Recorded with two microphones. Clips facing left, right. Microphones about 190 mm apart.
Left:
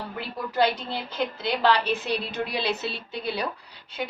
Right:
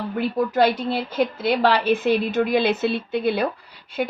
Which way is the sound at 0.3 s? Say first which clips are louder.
Right 4 dB; 50° right (ahead or behind).